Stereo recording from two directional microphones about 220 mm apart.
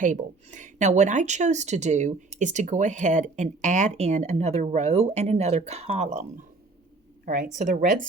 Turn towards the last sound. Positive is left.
turn(degrees=-35)  # may be behind; listen again after turning